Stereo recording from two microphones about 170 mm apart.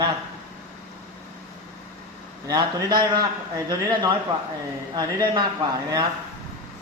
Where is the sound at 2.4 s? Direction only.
20° right (ahead or behind).